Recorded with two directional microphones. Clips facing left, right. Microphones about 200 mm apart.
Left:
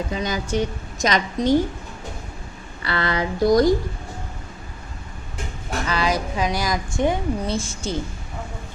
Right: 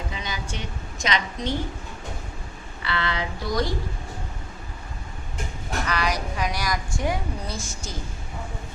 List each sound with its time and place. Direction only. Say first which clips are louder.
0.1 s speech: left 9 dB; 45° left (ahead or behind)
2.8 s speech: left 4 dB; 40° left (ahead or behind)
5.9 s a woman's voice: left 5 dB; 25° left (ahead or behind)